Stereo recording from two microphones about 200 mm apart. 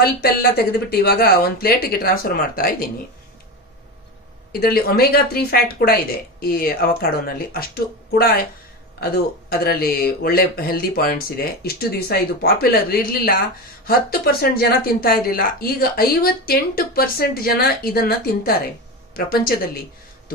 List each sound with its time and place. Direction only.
0.0 s speech: 50° left (ahead or behind)
4.5 s speech: 50° left (ahead or behind)